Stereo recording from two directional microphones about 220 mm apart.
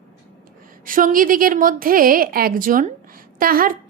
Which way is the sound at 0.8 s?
40° right (ahead or behind).